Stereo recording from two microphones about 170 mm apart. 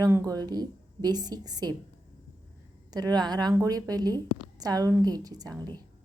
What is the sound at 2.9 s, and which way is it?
A woman's voice, 25° right (ahead or behind).